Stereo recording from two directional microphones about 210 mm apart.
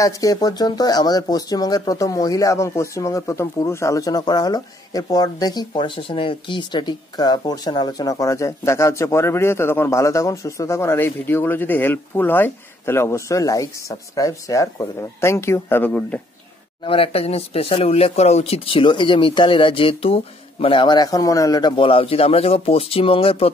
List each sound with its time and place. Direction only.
0.0 s speech: 15° left (ahead or behind)
16.8 s speech: 25° left (ahead or behind)